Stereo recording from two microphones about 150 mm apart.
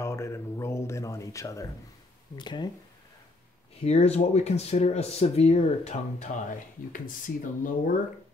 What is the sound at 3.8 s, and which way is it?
Speech, 45° left (ahead or behind).